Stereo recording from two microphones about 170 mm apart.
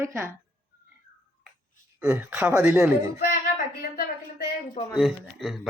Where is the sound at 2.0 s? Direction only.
5° right (ahead or behind).